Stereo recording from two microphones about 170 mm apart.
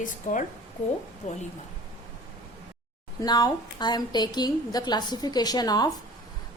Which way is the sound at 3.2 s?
25° left (ahead or behind).